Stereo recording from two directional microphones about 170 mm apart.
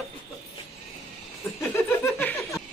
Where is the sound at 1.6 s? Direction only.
15° left (ahead or behind).